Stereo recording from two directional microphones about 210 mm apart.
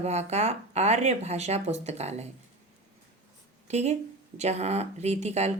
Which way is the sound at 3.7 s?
30° right (ahead or behind).